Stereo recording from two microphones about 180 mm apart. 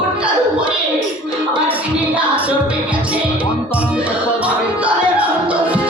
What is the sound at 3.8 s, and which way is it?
Music, 5° right (ahead or behind).